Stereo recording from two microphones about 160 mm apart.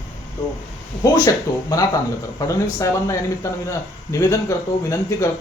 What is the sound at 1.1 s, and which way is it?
Speech, 20° left (ahead or behind).